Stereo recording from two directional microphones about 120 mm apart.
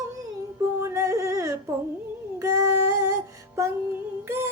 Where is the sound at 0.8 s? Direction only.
25° right (ahead or behind).